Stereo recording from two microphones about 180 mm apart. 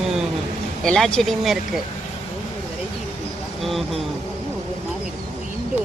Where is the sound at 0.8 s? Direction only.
5° left (ahead or behind).